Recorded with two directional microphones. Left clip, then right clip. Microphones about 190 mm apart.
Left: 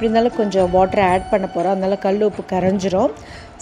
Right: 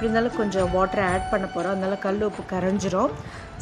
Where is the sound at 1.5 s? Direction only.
Centre (ahead or behind).